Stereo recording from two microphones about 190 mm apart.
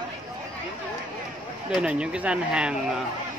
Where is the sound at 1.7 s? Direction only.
5° right (ahead or behind).